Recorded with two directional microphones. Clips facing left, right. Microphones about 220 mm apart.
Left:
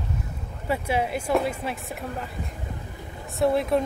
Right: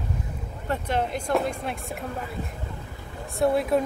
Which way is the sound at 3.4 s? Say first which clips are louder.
Even; centre (ahead or behind).